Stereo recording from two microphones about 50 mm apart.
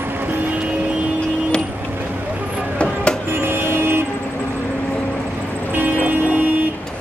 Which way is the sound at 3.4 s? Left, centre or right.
Right.